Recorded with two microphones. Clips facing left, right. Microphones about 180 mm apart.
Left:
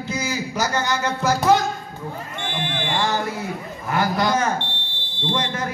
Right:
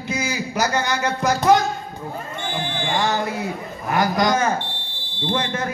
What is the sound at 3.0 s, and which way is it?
A man's voice, 20° right (ahead or behind).